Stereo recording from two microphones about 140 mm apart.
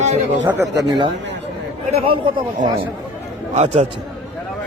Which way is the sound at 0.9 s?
35° right (ahead or behind).